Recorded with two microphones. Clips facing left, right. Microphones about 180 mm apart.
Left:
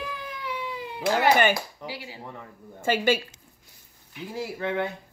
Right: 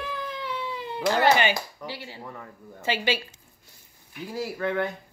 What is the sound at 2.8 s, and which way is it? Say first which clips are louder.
Speech: left 4 dB; 50° left (ahead or behind).